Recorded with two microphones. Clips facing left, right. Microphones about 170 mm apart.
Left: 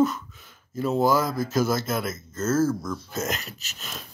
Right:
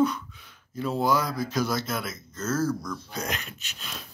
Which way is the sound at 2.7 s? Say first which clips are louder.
Left 2 dB; 25° left (ahead or behind).